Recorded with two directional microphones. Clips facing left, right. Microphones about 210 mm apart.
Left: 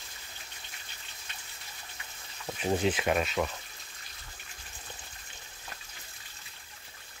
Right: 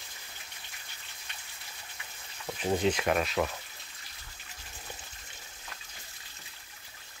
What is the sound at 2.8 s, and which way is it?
Speech, 5° left (ahead or behind).